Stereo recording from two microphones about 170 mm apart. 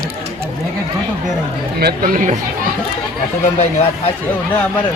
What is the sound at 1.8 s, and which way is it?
Speech, 60° right (ahead or behind).